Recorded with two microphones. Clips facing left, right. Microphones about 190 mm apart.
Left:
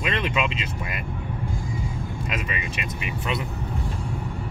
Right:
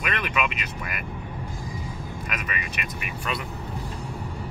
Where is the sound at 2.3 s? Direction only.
25° left (ahead or behind).